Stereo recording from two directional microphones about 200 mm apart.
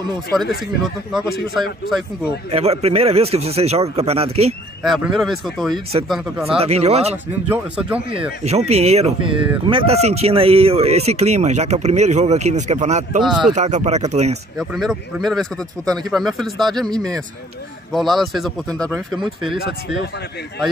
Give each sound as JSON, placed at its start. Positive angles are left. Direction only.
{"t": 0.3, "sound": "speech", "side_deg": 0}
{"t": 2.5, "sound": "speech", "side_deg": -30}
{"t": 4.8, "sound": "speech", "side_deg": 0}
{"t": 6.4, "sound": "speech", "side_deg": -30}
{"t": 7.4, "sound": "a man's voice", "side_deg": -10}
{"t": 8.2, "sound": "speech", "side_deg": -30}
{"t": 13.2, "sound": "speech", "side_deg": 0}
{"t": 13.5, "sound": "speech", "side_deg": -35}
{"t": 14.6, "sound": "speech", "side_deg": 0}
{"t": 17.9, "sound": "speech", "side_deg": 0}